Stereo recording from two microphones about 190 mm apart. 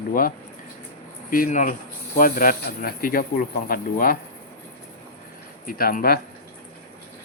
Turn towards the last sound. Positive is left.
turn(degrees=50)  # may be behind; listen again after turning